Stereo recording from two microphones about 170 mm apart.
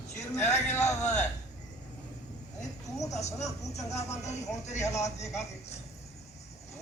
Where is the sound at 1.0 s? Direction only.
45° left (ahead or behind).